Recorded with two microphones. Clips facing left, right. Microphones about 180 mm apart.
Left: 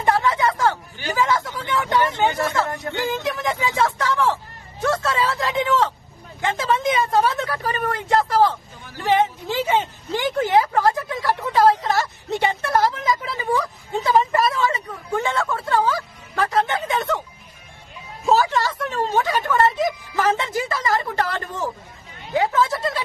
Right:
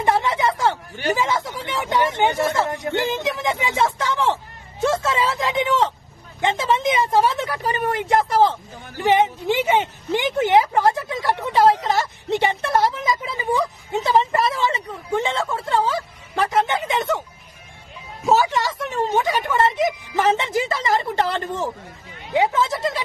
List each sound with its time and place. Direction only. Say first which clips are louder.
0.0 s a sound: even; 20° right (ahead or behind)
1.1 s a woman's voice: left 3 dB; 20° right (ahead or behind)
18.2 s a woman's voice: even; 15° right (ahead or behind)